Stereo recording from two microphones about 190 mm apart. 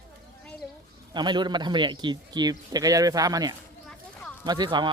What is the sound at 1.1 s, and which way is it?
A man's voice, 25° right (ahead or behind).